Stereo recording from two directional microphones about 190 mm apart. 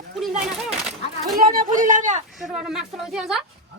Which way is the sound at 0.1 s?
Centre (ahead or behind).